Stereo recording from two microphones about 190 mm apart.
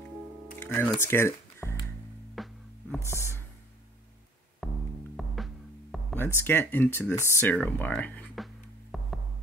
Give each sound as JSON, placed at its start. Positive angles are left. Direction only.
{"t": 0.6, "sound": "speech", "side_deg": 10}
{"t": 2.3, "sound": "music", "side_deg": 0}
{"t": 3.0, "sound": "speech", "side_deg": 15}
{"t": 4.6, "sound": "music", "side_deg": 0}
{"t": 6.1, "sound": "speech", "side_deg": 10}
{"t": 8.9, "sound": "music", "side_deg": 0}